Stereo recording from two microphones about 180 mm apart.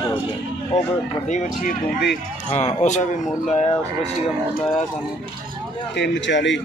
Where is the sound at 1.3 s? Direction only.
40° left (ahead or behind).